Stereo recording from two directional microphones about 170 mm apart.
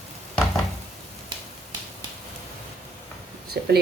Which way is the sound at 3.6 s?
70° right (ahead or behind).